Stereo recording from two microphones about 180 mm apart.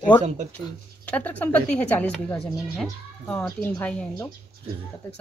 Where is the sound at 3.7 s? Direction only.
15° left (ahead or behind).